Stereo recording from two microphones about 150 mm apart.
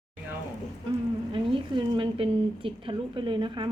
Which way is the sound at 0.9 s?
35° right (ahead or behind).